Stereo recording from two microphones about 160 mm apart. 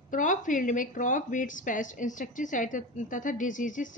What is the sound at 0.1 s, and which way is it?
A woman's voice, 55° left (ahead or behind).